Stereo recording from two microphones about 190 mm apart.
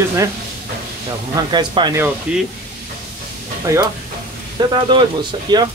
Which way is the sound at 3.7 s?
15° right (ahead or behind).